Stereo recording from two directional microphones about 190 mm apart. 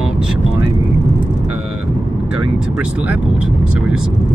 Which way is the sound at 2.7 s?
5° right (ahead or behind).